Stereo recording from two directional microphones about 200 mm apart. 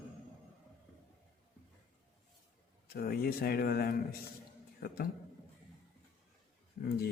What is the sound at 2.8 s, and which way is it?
Speech, 50° left (ahead or behind).